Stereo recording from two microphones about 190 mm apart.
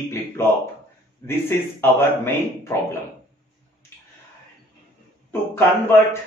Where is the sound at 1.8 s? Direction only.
10° left (ahead or behind).